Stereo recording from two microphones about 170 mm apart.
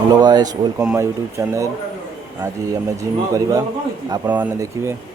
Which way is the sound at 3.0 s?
20° right (ahead or behind).